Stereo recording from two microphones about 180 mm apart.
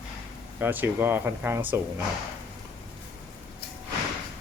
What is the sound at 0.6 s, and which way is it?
Speech, 10° right (ahead or behind).